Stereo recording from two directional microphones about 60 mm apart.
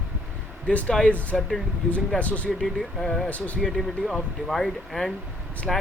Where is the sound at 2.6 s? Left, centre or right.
Centre.